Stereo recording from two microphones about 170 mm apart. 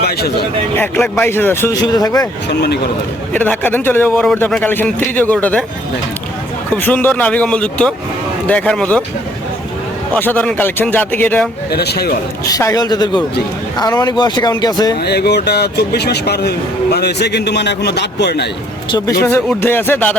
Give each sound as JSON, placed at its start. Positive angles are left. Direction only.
{"t": 0.0, "sound": "speech", "side_deg": 70}
{"t": 0.8, "sound": "a man's voice", "side_deg": 10}
{"t": 1.8, "sound": "a man's voice", "side_deg": 25}
{"t": 2.5, "sound": "speech", "side_deg": 75}
{"t": 3.3, "sound": "a man's voice", "side_deg": 10}
{"t": 6.7, "sound": "a man's voice", "side_deg": 10}
{"t": 10.2, "sound": "a man's voice", "side_deg": 10}
{"t": 11.7, "sound": "speech", "side_deg": 70}
{"t": 12.5, "sound": "a man's voice", "side_deg": 20}
{"t": 15.0, "sound": "speech", "side_deg": 75}
{"t": 18.9, "sound": "a man's voice", "side_deg": 25}
{"t": 19.5, "sound": "a man's voice", "side_deg": 10}